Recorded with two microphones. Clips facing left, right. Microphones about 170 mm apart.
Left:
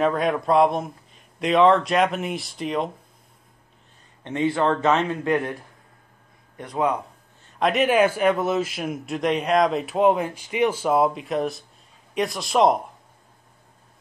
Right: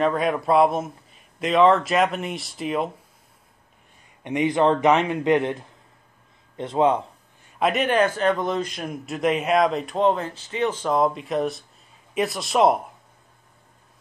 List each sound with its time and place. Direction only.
0.0 s a man's voice: centre (ahead or behind)
4.2 s a man's voice: 15° right (ahead or behind)
7.4 s a man's voice: 5° right (ahead or behind)